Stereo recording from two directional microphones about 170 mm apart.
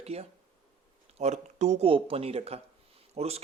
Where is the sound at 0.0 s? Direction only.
40° right (ahead or behind).